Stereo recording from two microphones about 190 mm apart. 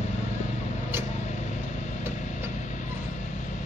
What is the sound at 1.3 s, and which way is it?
Vehicle, 40° left (ahead or behind).